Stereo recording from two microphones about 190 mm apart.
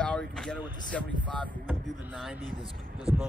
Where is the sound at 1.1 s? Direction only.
25° right (ahead or behind).